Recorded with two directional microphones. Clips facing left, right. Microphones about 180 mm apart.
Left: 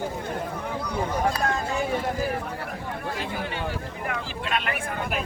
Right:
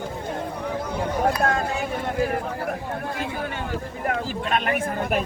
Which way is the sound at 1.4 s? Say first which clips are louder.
Right 4 dB; 55° right (ahead or behind).